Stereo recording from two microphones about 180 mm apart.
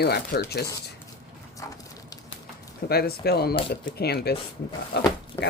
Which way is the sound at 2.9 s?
60° left (ahead or behind).